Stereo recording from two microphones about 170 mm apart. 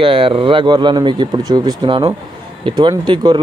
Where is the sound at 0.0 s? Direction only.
30° right (ahead or behind).